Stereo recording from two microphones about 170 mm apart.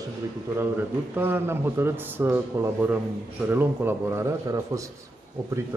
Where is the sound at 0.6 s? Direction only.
10° right (ahead or behind).